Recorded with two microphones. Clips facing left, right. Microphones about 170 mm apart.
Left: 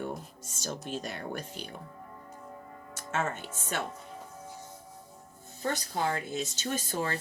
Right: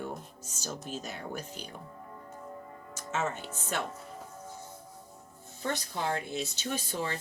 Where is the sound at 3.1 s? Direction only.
50° left (ahead or behind).